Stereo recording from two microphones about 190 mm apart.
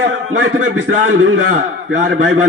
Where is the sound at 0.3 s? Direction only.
80° right.